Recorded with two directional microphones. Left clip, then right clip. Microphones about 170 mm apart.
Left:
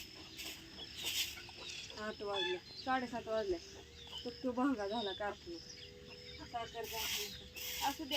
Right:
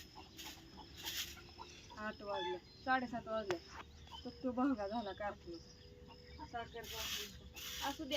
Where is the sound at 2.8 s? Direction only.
10° right (ahead or behind).